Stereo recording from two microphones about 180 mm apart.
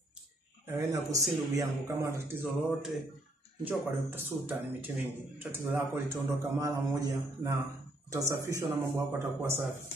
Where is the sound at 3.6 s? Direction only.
10° right (ahead or behind).